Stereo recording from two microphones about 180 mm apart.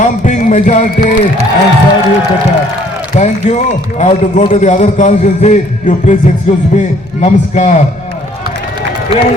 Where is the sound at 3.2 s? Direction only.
40° left (ahead or behind).